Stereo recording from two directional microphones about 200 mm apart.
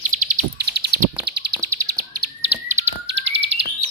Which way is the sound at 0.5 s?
55° right (ahead or behind).